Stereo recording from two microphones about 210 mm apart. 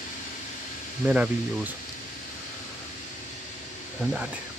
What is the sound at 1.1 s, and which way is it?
Speech, 5° right (ahead or behind).